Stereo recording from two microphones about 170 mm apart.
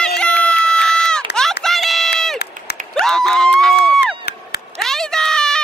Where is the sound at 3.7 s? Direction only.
75° left (ahead or behind).